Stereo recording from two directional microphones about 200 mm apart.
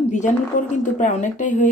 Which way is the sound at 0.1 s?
35° left (ahead or behind).